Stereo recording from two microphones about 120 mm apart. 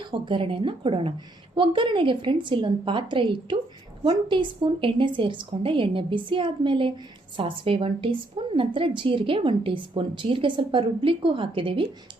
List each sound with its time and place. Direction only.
0.1 s a woman's voice: 45° right (ahead or behind)